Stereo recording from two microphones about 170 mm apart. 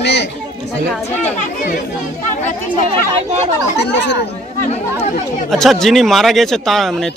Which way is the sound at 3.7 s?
80° left.